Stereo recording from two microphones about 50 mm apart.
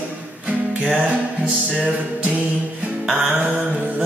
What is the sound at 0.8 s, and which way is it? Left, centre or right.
Music, right.